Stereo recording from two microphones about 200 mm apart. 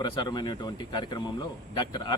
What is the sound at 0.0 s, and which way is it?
Speech, 20° left (ahead or behind).